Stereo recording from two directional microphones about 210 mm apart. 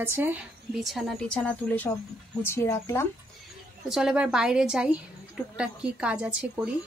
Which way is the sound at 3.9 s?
5° right (ahead or behind).